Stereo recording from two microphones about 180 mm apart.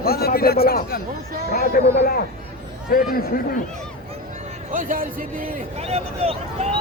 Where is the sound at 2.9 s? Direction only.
55° left (ahead or behind).